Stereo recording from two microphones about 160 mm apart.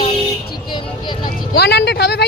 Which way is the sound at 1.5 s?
90° left.